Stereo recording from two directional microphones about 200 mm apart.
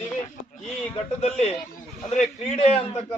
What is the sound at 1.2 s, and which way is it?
A man's voice, 30° left (ahead or behind).